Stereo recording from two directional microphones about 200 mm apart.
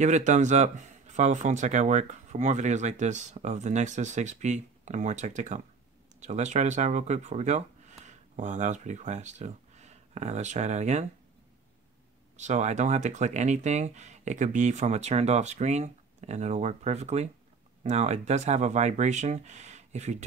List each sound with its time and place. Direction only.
0.0 s speech: 35° right (ahead or behind)
12.4 s speech: 35° right (ahead or behind)